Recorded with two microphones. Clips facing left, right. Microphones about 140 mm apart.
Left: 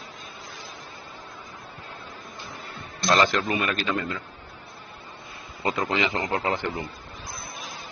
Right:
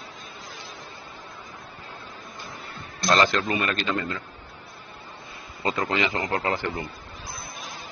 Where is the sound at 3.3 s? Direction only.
15° left (ahead or behind).